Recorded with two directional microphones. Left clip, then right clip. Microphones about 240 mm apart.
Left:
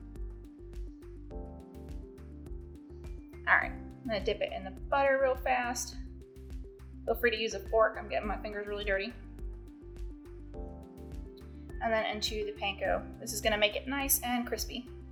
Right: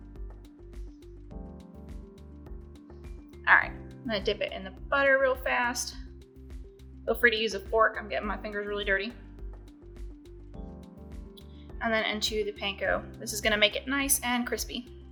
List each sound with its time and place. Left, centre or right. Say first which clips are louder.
3.4 s speech: right 5 dB; centre
7.1 s speech: right 5 dB; right
11.8 s speech: right 3 dB; right